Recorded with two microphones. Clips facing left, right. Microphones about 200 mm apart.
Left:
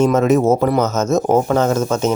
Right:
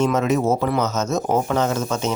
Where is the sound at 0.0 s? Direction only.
45° left (ahead or behind).